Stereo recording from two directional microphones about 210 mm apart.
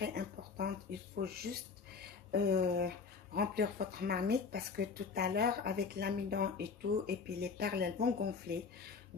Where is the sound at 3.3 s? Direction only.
45° right (ahead or behind).